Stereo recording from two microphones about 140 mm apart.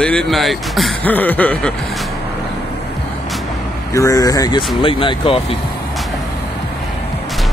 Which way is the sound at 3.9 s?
20° left (ahead or behind).